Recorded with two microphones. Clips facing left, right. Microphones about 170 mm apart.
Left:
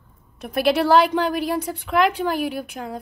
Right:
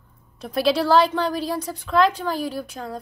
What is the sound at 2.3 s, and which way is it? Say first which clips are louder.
Speech: left 2 dB; 60° left (ahead or behind).